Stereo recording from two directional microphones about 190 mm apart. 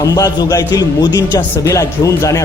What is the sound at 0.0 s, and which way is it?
A man's voice, 20° left (ahead or behind).